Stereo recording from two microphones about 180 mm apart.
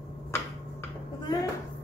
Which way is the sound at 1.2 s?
20° left (ahead or behind).